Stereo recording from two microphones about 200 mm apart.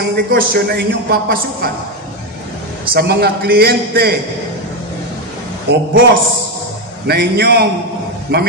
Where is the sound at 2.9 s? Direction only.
55° right (ahead or behind).